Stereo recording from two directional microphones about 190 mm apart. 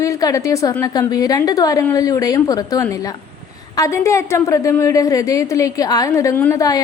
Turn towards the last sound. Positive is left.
turn(degrees=20)  # may be behind; listen again after turning